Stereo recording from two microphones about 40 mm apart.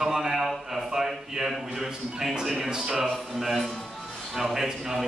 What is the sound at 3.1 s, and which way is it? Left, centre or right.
A man's voice, centre.